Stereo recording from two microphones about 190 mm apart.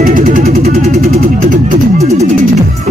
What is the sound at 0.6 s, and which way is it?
Vehicle, 40° right (ahead or behind).